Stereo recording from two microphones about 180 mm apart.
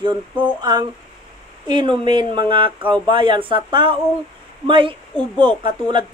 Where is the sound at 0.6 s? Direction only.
25° right (ahead or behind).